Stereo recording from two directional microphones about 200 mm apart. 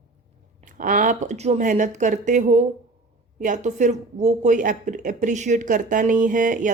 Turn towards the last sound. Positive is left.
turn(degrees=-40)  # may be behind; listen again after turning